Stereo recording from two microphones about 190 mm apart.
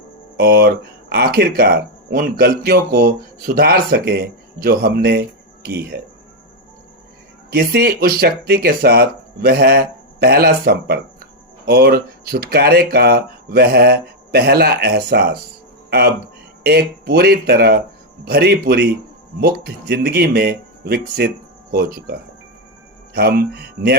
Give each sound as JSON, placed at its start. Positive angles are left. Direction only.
{"t": 0.3, "sound": "speech", "side_deg": -55}
{"t": 7.5, "sound": "speech", "side_deg": -55}